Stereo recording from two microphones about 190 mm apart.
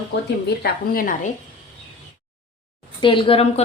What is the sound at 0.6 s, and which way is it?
Speech, 50° left (ahead or behind).